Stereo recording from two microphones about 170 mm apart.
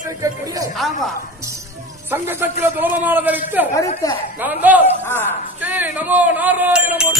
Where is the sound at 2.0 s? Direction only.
15° right (ahead or behind).